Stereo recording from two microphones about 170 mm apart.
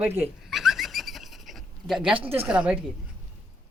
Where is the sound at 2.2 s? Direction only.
35° right (ahead or behind).